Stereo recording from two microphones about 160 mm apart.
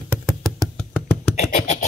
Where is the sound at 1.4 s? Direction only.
50° left (ahead or behind).